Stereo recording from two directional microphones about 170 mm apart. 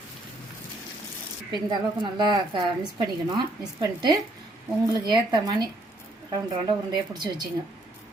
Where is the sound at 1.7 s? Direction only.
25° right (ahead or behind).